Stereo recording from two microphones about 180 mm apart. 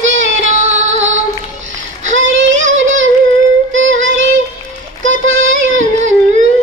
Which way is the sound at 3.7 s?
90° right.